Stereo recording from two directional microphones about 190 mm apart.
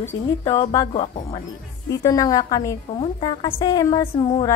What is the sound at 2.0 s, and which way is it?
A woman's voice, 20° left (ahead or behind).